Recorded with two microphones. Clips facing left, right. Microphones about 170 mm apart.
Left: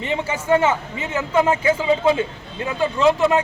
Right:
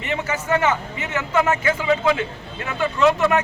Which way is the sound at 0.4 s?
30° left (ahead or behind).